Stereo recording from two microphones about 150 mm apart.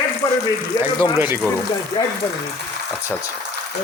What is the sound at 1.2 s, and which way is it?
Speech, 15° right (ahead or behind).